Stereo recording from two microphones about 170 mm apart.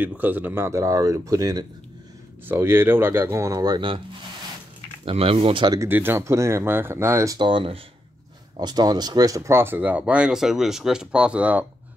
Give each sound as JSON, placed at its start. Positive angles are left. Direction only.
{"t": 0.0, "sound": "speech", "side_deg": -10}
{"t": 5.0, "sound": "speech", "side_deg": -35}
{"t": 5.8, "sound": "speech", "side_deg": -15}